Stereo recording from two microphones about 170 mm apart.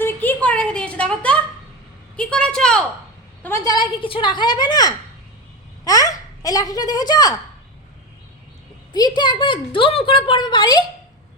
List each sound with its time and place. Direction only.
0.0 s a sound: 10° left (ahead or behind)
3.4 s a woman's voice: 15° left (ahead or behind)
8.9 s a woman's voice: 25° left (ahead or behind)